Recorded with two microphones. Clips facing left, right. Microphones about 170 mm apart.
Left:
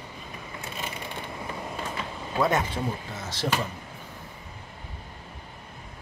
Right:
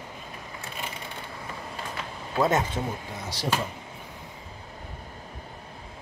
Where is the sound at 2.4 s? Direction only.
20° right (ahead or behind).